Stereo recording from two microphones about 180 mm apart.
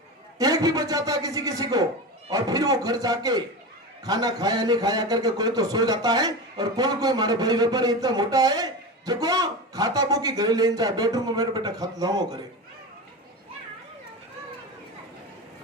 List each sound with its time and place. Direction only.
0.3 s a man's voice: 20° right (ahead or behind)